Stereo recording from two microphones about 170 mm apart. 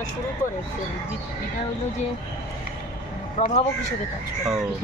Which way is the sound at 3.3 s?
45° left (ahead or behind).